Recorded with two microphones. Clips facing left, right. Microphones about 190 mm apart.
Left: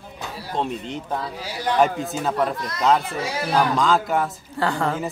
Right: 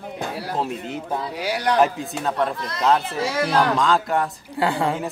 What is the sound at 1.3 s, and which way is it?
Speech, 75° right (ahead or behind).